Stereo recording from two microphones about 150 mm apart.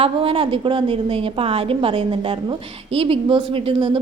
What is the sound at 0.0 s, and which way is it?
A woman's voice, 40° right (ahead or behind).